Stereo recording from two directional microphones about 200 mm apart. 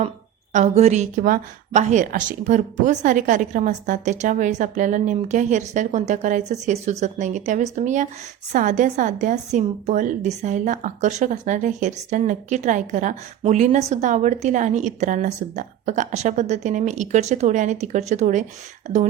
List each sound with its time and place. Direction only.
0.5 s a woman's voice: 35° right (ahead or behind)